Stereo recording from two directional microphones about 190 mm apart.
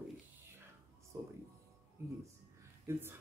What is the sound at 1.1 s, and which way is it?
Speech, 15° right (ahead or behind).